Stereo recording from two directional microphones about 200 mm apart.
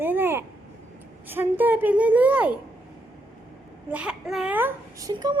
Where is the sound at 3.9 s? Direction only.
5° right (ahead or behind).